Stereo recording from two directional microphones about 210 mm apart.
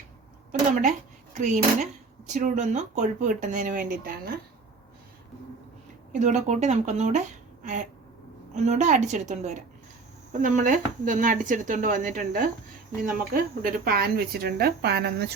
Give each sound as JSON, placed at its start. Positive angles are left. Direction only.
{"t": 0.8, "sound": "speech", "side_deg": -35}
{"t": 6.1, "sound": "speech", "side_deg": -35}
{"t": 7.6, "sound": "a sound", "side_deg": -35}
{"t": 8.5, "sound": "speech", "side_deg": -35}